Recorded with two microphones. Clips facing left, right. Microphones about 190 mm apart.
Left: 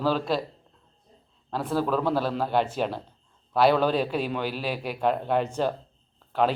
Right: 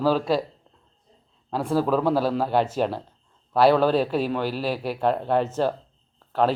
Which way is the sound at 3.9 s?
40° right (ahead or behind).